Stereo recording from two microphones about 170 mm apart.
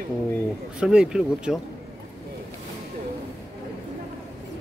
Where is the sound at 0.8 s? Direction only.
5° right (ahead or behind).